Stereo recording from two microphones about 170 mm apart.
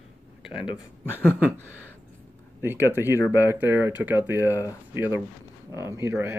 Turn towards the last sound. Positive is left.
turn(degrees=-15)  # may be behind; listen again after turning